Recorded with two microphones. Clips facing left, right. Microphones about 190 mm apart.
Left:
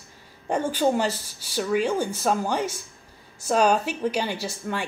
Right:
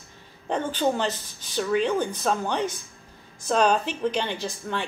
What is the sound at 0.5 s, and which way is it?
A woman's voice, 10° left (ahead or behind).